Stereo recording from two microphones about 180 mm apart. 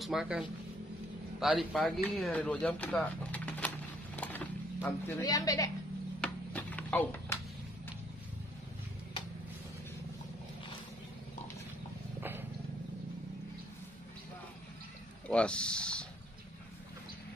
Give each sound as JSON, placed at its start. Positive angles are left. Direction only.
{"t": 0.0, "sound": "speech", "side_deg": -5}
{"t": 4.2, "sound": "wild animals", "side_deg": 10}
{"t": 4.8, "sound": "a woman's voice", "side_deg": 15}
{"t": 6.2, "sound": "a sound", "side_deg": 10}
{"t": 12.2, "sound": "vehicle", "side_deg": -10}
{"t": 15.2, "sound": "a sound", "side_deg": 5}